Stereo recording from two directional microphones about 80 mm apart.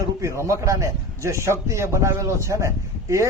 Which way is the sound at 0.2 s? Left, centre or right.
Right.